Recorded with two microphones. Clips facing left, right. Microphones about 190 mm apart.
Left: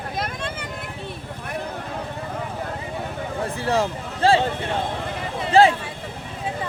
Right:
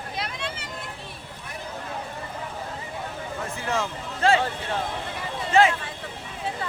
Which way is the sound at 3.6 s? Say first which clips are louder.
Left 6 dB; 35° left (ahead or behind).